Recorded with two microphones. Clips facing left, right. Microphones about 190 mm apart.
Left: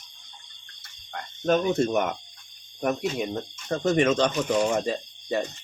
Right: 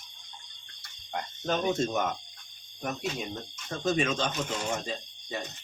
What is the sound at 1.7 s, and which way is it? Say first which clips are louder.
Speech: left 5 dB; 65° left (ahead or behind).